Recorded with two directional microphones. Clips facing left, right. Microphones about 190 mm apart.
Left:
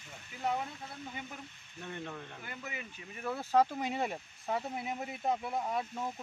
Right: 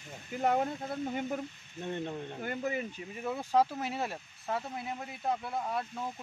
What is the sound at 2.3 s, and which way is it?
Speech, 40° right (ahead or behind).